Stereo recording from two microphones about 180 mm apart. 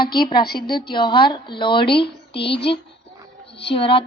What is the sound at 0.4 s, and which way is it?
Speech, 60° left (ahead or behind).